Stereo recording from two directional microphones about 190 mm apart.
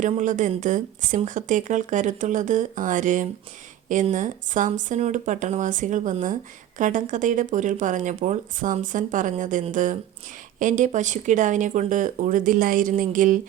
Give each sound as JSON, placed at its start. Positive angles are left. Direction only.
{"t": 0.0, "sound": "speech", "side_deg": -40}